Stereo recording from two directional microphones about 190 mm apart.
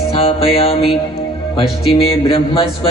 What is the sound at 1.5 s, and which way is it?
Music, 30° left (ahead or behind).